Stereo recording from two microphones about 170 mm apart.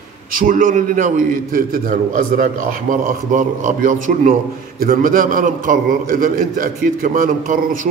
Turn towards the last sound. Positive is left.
turn(degrees=-55)  # may be behind; listen again after turning